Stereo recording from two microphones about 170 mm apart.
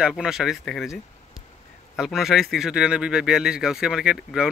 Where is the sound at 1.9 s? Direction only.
Centre (ahead or behind).